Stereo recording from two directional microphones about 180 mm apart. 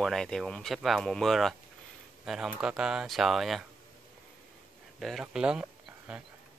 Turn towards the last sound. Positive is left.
turn(degrees=-5)  # may be behind; listen again after turning